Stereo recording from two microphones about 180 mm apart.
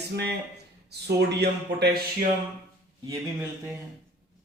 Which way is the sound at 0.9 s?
65° right (ahead or behind).